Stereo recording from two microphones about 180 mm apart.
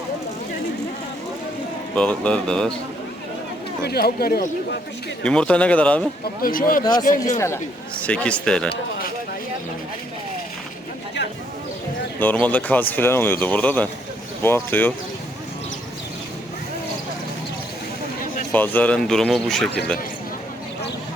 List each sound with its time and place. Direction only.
2.0 s speech: 5° left (ahead or behind)
3.8 s speech: 60° left (ahead or behind)
5.2 s speech: 5° left (ahead or behind)
6.4 s speech: 50° left (ahead or behind)
7.3 s speech: 15° left (ahead or behind)
12.2 s speech: 10° left (ahead or behind)
18.5 s speech: 10° left (ahead or behind)